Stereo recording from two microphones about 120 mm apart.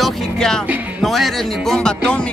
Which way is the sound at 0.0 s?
5° left (ahead or behind).